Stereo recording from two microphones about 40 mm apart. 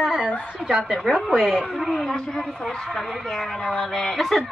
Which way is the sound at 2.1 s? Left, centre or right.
Centre.